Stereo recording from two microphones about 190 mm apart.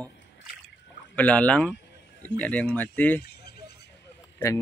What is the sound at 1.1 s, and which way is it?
Speech, 5° left (ahead or behind).